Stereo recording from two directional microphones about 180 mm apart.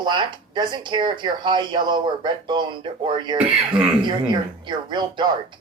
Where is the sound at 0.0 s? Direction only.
25° right (ahead or behind).